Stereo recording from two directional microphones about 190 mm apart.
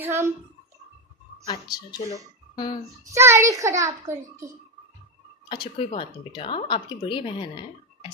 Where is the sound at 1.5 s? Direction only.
20° left (ahead or behind).